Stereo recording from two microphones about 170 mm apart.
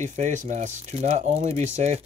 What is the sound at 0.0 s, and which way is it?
Speech, 45° right (ahead or behind).